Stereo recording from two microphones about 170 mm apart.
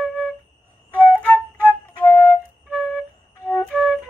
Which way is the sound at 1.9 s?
25° left (ahead or behind).